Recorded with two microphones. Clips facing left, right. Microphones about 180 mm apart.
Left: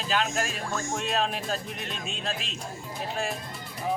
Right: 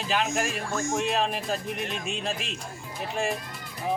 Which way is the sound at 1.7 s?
60° right (ahead or behind).